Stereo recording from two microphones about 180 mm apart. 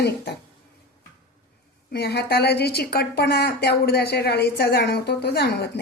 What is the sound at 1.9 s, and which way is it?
A woman's voice, 65° left (ahead or behind).